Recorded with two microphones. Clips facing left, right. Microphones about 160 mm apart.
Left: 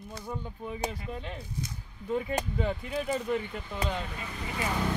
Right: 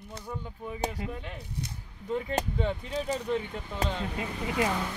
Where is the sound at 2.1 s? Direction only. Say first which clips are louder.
Even; 10° left (ahead or behind).